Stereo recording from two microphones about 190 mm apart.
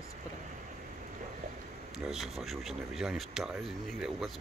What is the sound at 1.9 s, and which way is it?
Speech, centre (ahead or behind).